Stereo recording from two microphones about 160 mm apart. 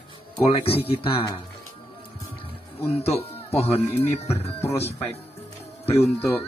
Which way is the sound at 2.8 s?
40° left (ahead or behind).